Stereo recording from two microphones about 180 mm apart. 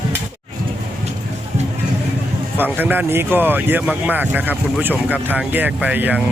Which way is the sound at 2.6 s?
10° right (ahead or behind).